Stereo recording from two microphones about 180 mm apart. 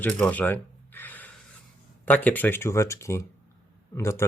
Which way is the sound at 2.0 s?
10° left (ahead or behind).